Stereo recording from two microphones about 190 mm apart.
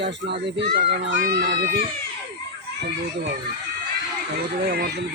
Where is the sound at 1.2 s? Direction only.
50° right (ahead or behind).